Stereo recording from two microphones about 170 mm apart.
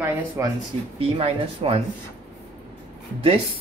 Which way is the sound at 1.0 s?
35° right (ahead or behind).